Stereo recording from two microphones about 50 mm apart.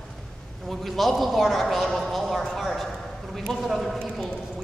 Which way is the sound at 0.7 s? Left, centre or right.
Centre.